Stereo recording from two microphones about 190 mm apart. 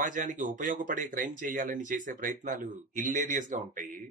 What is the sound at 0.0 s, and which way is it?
Speech, 45° right (ahead or behind).